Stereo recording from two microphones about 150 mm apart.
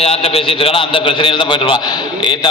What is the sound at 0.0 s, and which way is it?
A man's voice, 40° left (ahead or behind).